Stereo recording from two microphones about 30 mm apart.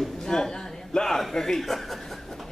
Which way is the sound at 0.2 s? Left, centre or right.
Left.